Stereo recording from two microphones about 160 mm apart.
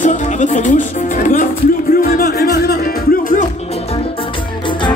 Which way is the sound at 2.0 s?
65° left (ahead or behind).